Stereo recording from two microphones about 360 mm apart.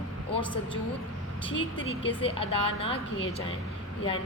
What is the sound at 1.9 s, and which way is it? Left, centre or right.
A woman's voice, centre.